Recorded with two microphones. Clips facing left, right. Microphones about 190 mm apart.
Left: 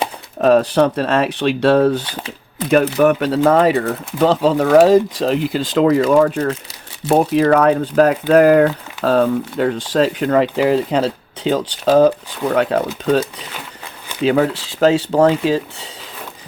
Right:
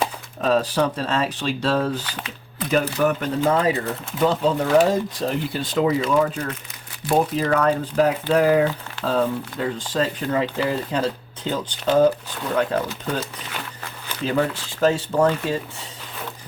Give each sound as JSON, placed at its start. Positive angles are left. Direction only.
{"t": 0.4, "sound": "speech", "side_deg": 60}
{"t": 6.1, "sound": "speech", "side_deg": 50}
{"t": 7.1, "sound": "speech", "side_deg": 65}
{"t": 14.3, "sound": "speech", "side_deg": 75}
{"t": 15.3, "sound": "speech", "side_deg": 90}